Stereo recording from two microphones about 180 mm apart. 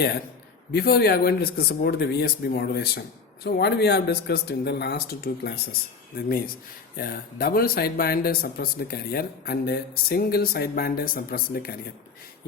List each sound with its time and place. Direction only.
0.7 s speech: 60° left (ahead or behind)